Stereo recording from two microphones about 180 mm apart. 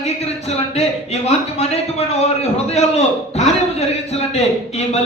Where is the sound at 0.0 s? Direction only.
35° left (ahead or behind).